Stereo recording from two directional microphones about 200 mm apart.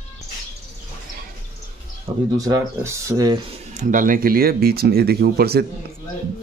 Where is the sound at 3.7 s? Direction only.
40° right (ahead or behind).